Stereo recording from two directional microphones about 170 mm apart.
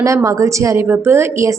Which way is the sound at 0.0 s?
20° right (ahead or behind).